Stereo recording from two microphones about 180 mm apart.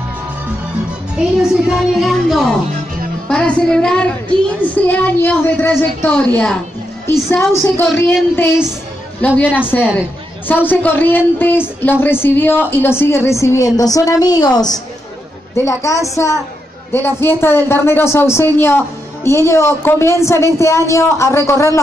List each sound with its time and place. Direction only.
1.1 s a woman's voice: centre (ahead or behind)
9.2 s a woman's voice: 10° left (ahead or behind)